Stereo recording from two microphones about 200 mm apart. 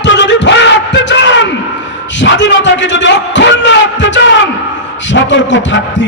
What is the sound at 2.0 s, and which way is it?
A man's voice, 65° left (ahead or behind).